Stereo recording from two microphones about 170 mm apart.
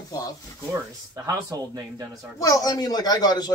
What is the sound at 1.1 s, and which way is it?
Speech, 20° right (ahead or behind).